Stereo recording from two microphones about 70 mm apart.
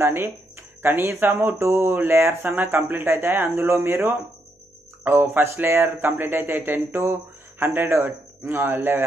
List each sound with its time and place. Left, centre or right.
0.0 s speech: right